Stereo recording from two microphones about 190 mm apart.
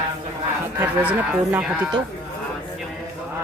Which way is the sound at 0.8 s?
10° right (ahead or behind).